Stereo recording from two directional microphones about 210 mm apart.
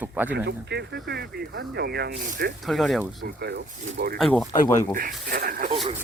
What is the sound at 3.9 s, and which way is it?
Speech, 45° right (ahead or behind).